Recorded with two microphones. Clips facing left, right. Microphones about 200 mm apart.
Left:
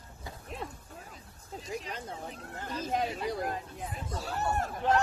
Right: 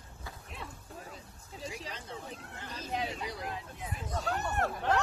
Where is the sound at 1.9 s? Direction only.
45° left (ahead or behind).